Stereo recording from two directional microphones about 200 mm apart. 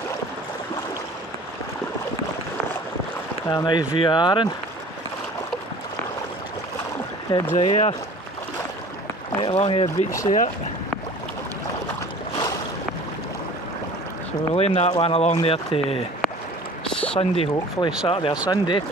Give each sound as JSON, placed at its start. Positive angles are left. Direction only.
{"t": 3.4, "sound": "speech", "side_deg": 20}
{"t": 7.2, "sound": "speech", "side_deg": 20}
{"t": 9.4, "sound": "speech", "side_deg": 25}
{"t": 10.2, "sound": "speech", "side_deg": 40}
{"t": 14.5, "sound": "speech", "side_deg": 30}
{"t": 16.9, "sound": "a sound", "side_deg": 5}
{"t": 17.2, "sound": "speech", "side_deg": 25}